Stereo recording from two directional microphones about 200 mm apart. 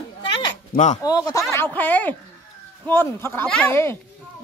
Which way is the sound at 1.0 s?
20° left (ahead or behind).